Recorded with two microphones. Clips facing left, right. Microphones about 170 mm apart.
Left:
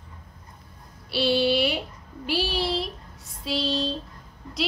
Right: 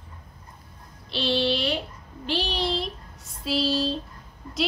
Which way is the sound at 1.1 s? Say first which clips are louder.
Left 3 dB; 10° left (ahead or behind).